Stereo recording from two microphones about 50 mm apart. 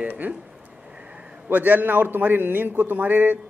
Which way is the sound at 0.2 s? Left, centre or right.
Right.